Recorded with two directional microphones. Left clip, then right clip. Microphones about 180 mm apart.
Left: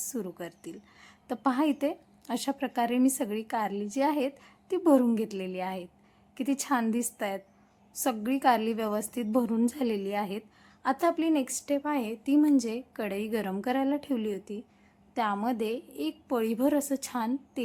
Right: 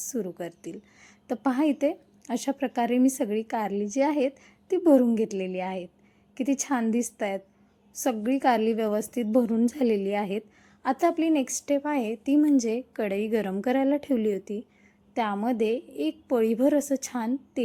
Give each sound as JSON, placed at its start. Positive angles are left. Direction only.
{"t": 0.1, "sound": "a woman's voice", "side_deg": -10}